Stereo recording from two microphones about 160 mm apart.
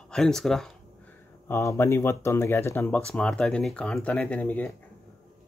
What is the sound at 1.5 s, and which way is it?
Speech, 15° left (ahead or behind).